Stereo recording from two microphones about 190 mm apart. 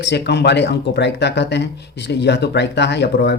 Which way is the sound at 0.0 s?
65° left (ahead or behind).